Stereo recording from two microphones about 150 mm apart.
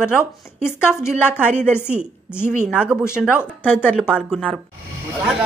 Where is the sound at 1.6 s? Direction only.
15° left (ahead or behind).